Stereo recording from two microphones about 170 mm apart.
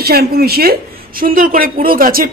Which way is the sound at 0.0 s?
65° right (ahead or behind).